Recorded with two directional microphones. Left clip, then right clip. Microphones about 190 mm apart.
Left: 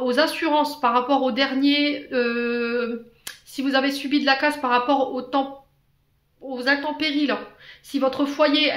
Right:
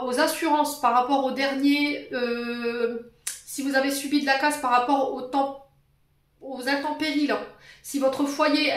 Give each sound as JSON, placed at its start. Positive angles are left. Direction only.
{"t": 0.0, "sound": "speech", "side_deg": 35}
{"t": 6.5, "sound": "speech", "side_deg": 30}